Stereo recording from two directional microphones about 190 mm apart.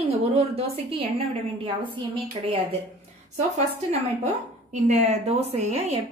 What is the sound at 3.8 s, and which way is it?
A woman's voice, 35° right (ahead or behind).